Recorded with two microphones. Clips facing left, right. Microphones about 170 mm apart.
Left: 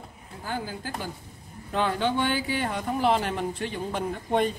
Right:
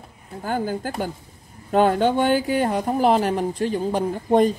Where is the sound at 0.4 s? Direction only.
50° right (ahead or behind).